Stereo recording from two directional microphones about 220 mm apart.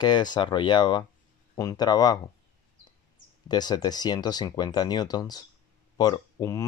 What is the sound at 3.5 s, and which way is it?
Speech, 20° left (ahead or behind).